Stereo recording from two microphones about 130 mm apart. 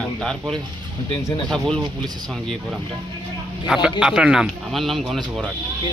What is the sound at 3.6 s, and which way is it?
Speech, 5° right (ahead or behind).